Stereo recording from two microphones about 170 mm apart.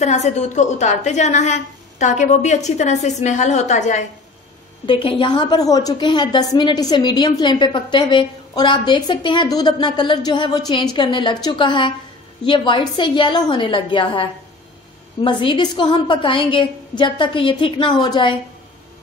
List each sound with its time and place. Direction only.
0.0 s a woman's voice: 40° left (ahead or behind)
4.8 s a woman's voice: 30° left (ahead or behind)
15.2 s a woman's voice: 30° left (ahead or behind)